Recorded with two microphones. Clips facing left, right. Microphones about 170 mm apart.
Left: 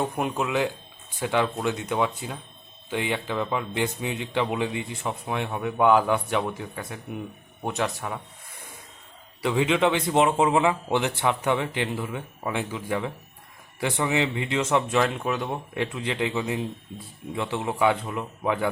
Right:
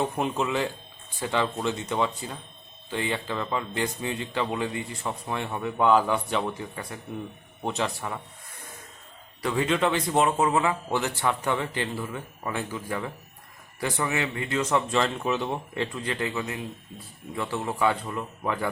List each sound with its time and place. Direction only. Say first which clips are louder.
0.0 s a man's voice: even; 5° left (ahead or behind)
7.6 s speech: left 1 dB; 10° left (ahead or behind)
9.4 s speech: left 3 dB; 15° left (ahead or behind)